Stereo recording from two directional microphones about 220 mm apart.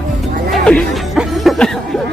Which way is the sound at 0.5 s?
Centre (ahead or behind).